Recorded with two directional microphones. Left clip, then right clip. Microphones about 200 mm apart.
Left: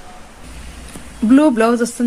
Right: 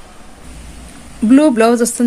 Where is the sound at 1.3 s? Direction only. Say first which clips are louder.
Right 2 dB; 15° right (ahead or behind).